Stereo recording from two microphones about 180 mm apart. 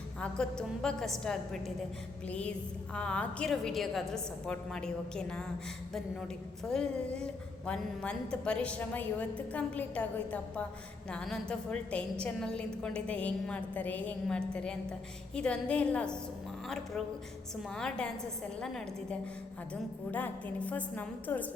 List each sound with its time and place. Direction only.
0.2 s a woman's voice: 5° left (ahead or behind)
6.7 s a woman's voice: 5° left (ahead or behind)
19.7 s a woman's voice: 10° left (ahead or behind)